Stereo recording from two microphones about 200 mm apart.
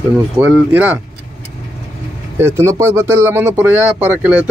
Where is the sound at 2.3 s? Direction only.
15° right (ahead or behind).